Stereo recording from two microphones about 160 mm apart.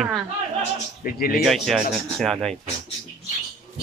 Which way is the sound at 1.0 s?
65° left (ahead or behind).